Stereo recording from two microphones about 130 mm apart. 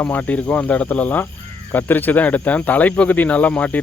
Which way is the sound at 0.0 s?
10° left (ahead or behind).